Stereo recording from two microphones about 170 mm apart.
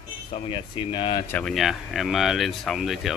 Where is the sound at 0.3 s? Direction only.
30° left (ahead or behind).